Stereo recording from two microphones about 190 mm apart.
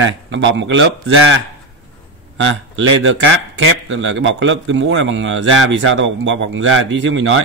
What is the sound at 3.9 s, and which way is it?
Speech, 90° right.